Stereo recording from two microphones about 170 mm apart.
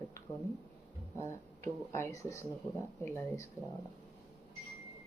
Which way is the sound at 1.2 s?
15° left (ahead or behind).